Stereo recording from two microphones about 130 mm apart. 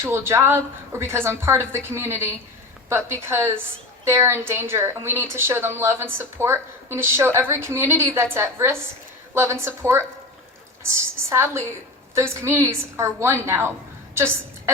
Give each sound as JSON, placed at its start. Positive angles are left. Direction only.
{"t": 0.0, "sound": "a woman's voice", "side_deg": -20}